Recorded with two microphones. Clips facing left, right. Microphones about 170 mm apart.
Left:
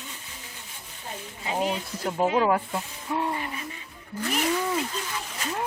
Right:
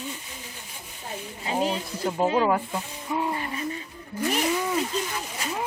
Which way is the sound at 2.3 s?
Centre (ahead or behind).